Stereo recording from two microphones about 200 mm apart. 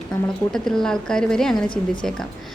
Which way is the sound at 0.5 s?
5° left (ahead or behind).